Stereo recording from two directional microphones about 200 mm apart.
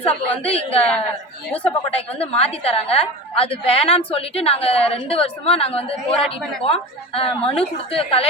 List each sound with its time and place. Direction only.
0.1 s a woman's voice: 30° left (ahead or behind)
0.8 s a woman's voice: 5° left (ahead or behind)
1.5 s a woman's voice: 30° left (ahead or behind)